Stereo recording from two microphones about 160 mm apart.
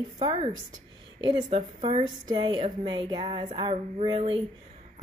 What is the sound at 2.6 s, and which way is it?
A woman's voice, 30° right (ahead or behind).